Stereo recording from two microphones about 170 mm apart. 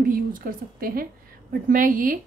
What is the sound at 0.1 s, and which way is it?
A woman's voice, 55° right (ahead or behind).